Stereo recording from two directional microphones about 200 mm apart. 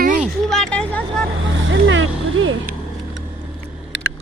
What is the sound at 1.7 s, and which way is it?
Vehicle, 70° right (ahead or behind).